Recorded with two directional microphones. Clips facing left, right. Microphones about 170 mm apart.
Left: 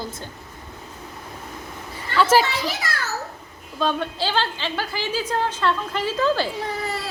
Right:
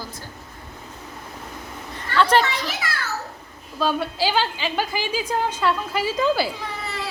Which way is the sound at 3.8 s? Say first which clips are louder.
Right 1 dB; 5° right (ahead or behind).